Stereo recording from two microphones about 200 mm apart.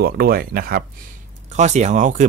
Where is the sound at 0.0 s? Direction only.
50° right (ahead or behind).